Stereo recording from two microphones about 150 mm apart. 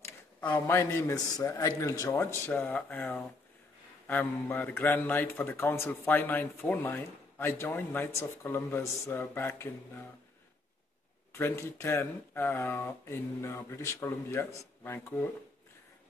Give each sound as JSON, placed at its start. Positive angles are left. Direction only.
{"t": 0.0, "sound": "a sound", "side_deg": 10}
{"t": 0.6, "sound": "a man's voice", "side_deg": 15}
{"t": 11.3, "sound": "a man's voice", "side_deg": 15}